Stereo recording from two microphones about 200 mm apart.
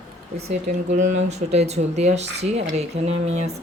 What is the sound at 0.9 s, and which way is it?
Speech, 35° right (ahead or behind).